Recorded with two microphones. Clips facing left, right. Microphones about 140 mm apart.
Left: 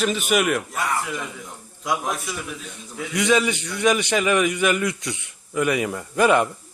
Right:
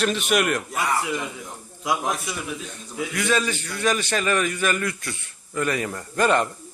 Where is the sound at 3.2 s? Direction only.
15° left (ahead or behind).